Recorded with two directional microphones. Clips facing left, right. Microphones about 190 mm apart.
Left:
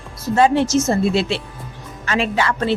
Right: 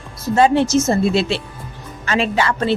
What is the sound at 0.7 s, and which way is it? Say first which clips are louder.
A woman's voice: right 1 dB; 30° right (ahead or behind).